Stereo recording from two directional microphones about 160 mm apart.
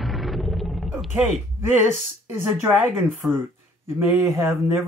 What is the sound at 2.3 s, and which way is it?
Speech, 10° right (ahead or behind).